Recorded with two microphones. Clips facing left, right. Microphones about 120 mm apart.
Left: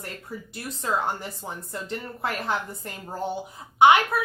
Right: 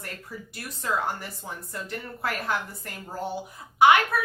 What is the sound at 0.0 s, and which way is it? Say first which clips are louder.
A woman's voice: left 2 dB; 25° left (ahead or behind).